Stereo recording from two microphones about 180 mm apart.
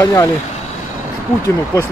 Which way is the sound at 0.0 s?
15° left (ahead or behind).